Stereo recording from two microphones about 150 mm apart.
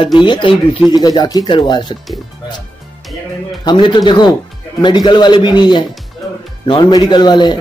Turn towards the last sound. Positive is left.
turn(degrees=30)  # may be behind; listen again after turning